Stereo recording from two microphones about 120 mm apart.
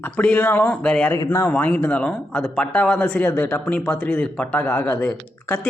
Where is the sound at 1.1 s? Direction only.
25° left (ahead or behind).